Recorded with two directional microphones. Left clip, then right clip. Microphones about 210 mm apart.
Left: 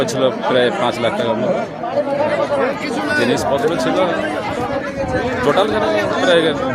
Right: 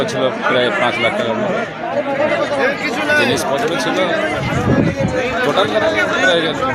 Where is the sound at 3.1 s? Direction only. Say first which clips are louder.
Right 3 dB; 60° left (ahead or behind).